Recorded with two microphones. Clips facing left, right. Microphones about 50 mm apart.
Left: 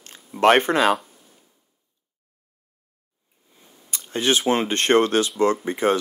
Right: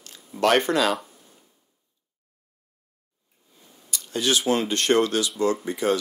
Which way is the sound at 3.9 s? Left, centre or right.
Left.